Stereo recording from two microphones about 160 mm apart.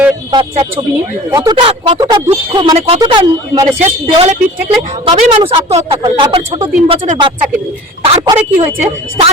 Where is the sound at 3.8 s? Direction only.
40° right (ahead or behind).